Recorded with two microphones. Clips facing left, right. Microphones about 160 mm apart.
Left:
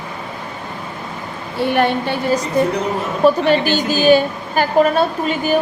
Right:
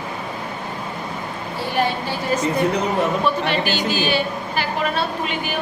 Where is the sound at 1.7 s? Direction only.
60° left (ahead or behind).